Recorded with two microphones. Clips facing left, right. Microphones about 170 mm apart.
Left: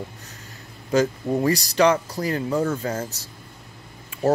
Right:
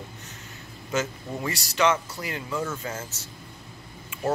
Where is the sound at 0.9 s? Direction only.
35° left (ahead or behind).